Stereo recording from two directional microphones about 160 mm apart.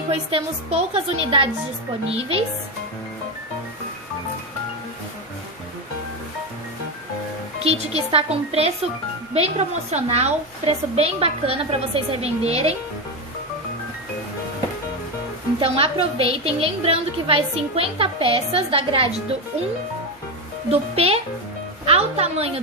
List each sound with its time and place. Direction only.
0.1 s a woman's voice: 40° right (ahead or behind)
7.6 s a woman's voice: 40° right (ahead or behind)
15.6 s a woman's voice: 35° right (ahead or behind)
20.9 s a woman's voice: 40° right (ahead or behind)